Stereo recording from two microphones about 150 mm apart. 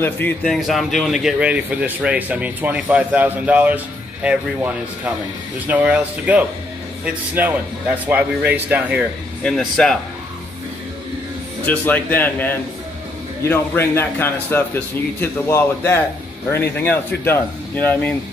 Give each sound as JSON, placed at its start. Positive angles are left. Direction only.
{"t": 0.0, "sound": "speech", "side_deg": 10}
{"t": 0.5, "sound": "speech", "side_deg": 0}
{"t": 9.4, "sound": "speech", "side_deg": 5}
{"t": 11.6, "sound": "speech", "side_deg": 10}